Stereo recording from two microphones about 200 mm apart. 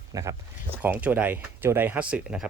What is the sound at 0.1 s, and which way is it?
Speech, 15° right (ahead or behind).